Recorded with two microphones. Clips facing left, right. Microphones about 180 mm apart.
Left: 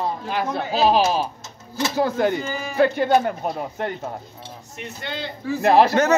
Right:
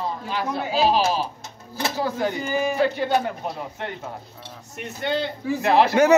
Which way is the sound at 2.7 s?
55° left (ahead or behind).